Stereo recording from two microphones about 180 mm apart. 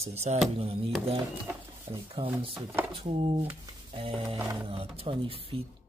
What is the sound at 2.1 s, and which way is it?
Speech, 30° right (ahead or behind).